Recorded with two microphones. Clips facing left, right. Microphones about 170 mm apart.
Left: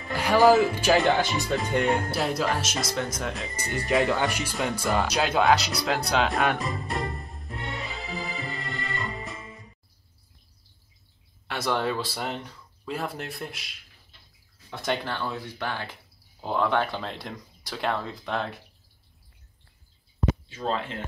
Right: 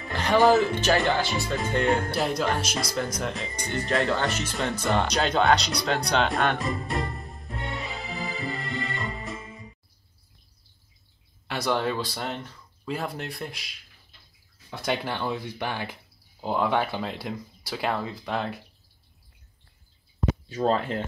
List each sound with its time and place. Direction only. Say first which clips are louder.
0.0 s speech: left 1 dB; 5° left (ahead or behind)
11.4 s speech: right 1 dB; centre (ahead or behind)
15.1 s speech: right 2 dB; 15° right (ahead or behind)
20.4 s speech: right 5 dB; 40° right (ahead or behind)